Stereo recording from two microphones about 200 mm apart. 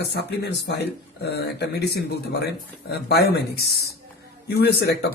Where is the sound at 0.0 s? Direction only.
55° left (ahead or behind).